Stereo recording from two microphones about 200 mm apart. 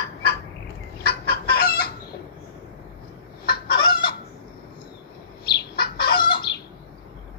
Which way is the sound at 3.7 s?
25° left (ahead or behind).